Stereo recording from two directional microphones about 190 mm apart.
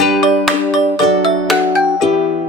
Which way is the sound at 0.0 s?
Centre (ahead or behind).